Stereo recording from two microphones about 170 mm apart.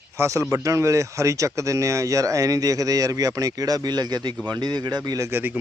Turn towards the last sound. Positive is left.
turn(degrees=-10)  # may be behind; listen again after turning